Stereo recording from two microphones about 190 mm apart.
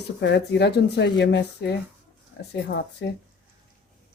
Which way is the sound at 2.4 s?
60° left (ahead or behind).